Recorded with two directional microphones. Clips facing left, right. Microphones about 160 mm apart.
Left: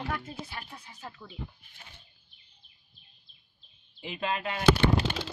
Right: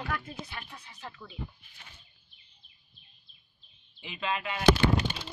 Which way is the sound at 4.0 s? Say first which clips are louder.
Left 2 dB; 40° left (ahead or behind).